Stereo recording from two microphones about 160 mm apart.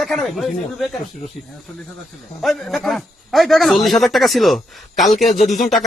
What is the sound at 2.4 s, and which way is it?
Speech, centre (ahead or behind).